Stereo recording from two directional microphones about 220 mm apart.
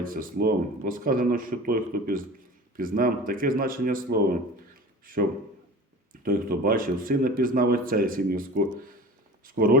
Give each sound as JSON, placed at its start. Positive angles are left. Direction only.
{"t": 0.0, "sound": "speech", "side_deg": -40}
{"t": 6.2, "sound": "speech", "side_deg": -40}